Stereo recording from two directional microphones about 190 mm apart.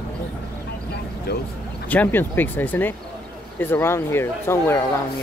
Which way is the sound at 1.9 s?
10° left (ahead or behind).